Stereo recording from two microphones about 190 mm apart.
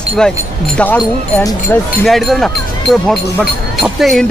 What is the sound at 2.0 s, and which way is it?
Speech, centre (ahead or behind).